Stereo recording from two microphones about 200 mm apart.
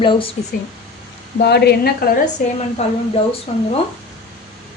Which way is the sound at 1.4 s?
55° left (ahead or behind).